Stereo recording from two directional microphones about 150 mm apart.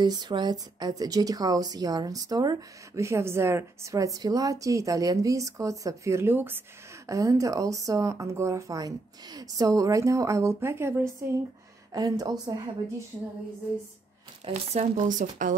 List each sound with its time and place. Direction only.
0.0 s a woman's voice: 30° right (ahead or behind)
14.4 s speech: 50° right (ahead or behind)